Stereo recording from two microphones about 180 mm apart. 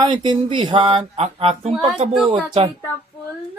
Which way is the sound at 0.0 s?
25° right (ahead or behind).